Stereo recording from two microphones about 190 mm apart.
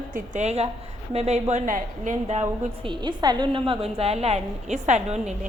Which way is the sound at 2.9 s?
25° right (ahead or behind).